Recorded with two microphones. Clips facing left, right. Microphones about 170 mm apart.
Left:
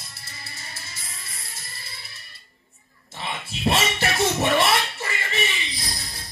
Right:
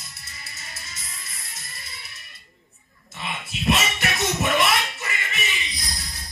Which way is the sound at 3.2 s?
30° left (ahead or behind).